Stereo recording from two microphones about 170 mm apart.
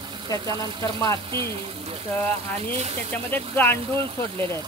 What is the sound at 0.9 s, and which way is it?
Speech, 20° left (ahead or behind).